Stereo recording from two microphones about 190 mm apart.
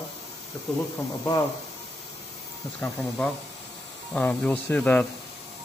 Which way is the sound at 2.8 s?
5° left (ahead or behind).